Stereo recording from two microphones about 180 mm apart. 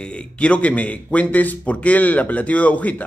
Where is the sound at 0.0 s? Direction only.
5° left (ahead or behind).